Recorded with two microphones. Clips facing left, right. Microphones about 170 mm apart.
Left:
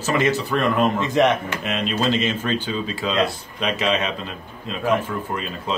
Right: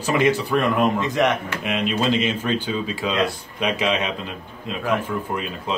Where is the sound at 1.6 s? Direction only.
10° right (ahead or behind).